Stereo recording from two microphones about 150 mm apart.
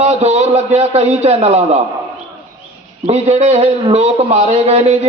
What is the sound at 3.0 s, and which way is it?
A man's voice, 45° right (ahead or behind).